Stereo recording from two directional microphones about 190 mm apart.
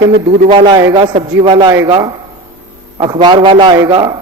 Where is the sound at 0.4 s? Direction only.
25° right (ahead or behind).